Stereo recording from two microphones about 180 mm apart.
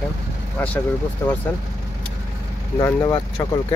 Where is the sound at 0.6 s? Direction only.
10° left (ahead or behind).